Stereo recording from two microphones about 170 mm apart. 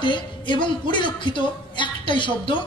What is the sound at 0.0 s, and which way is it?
A man's voice, 30° left (ahead or behind).